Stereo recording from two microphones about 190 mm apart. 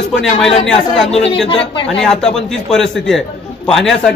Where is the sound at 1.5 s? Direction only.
30° left (ahead or behind).